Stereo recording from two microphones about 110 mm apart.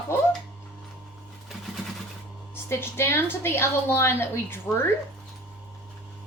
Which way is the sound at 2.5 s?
20° left (ahead or behind).